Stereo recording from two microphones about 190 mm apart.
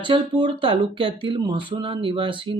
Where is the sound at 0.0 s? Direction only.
25° right (ahead or behind).